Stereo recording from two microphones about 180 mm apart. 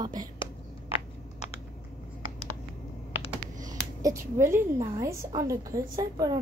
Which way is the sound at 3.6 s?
20° right (ahead or behind).